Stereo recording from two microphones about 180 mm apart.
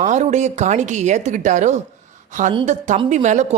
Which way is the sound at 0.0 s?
40° right (ahead or behind).